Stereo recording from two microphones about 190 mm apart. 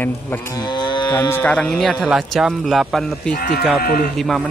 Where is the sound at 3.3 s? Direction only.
50° left (ahead or behind).